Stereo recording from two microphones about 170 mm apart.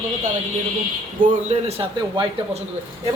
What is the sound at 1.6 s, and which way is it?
Speech, 35° right (ahead or behind).